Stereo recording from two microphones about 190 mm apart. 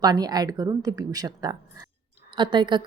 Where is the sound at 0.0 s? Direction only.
20° right (ahead or behind).